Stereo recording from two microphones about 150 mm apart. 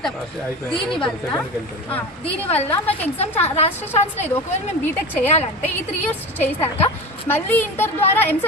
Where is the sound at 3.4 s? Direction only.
45° left (ahead or behind).